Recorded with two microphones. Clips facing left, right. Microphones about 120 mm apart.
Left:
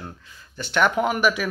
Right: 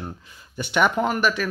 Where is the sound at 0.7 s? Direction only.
Centre (ahead or behind).